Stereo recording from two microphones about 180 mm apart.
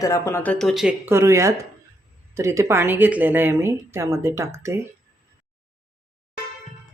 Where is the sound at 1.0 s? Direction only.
15° right (ahead or behind).